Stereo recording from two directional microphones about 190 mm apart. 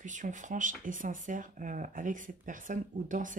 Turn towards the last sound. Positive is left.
turn(degrees=-40)  # may be behind; listen again after turning